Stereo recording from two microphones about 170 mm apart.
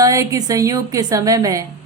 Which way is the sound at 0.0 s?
20° right (ahead or behind).